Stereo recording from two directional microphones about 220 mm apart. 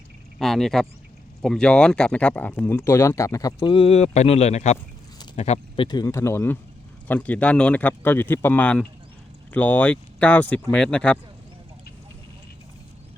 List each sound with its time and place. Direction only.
0.3 s speech: centre (ahead or behind)